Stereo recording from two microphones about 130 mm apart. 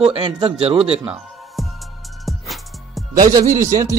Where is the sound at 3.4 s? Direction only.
80° right.